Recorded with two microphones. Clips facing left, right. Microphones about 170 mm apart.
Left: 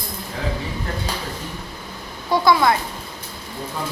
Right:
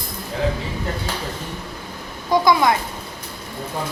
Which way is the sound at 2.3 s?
15° right (ahead or behind).